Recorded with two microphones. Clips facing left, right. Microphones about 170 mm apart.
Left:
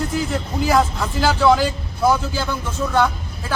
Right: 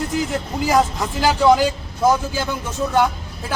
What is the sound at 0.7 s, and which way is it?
A man's voice, 15° right (ahead or behind).